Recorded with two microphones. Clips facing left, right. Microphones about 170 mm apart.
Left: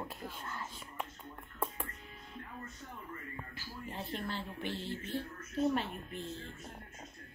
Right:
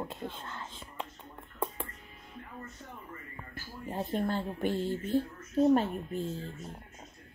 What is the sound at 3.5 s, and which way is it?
Speech, 45° right (ahead or behind).